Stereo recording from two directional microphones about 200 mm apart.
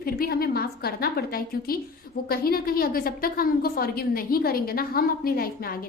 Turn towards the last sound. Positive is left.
turn(degrees=45)  # may be behind; listen again after turning